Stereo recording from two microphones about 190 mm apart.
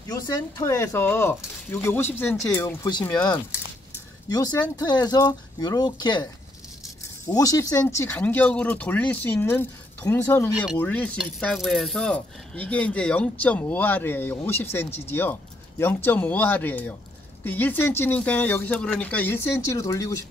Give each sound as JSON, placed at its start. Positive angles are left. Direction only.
{"t": 0.1, "sound": "speech", "side_deg": 15}
{"t": 7.2, "sound": "speech", "side_deg": 20}